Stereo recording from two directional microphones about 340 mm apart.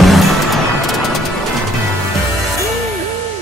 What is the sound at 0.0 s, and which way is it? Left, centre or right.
Music, centre.